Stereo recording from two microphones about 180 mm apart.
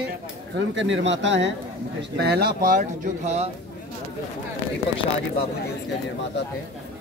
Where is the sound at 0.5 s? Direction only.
90° right.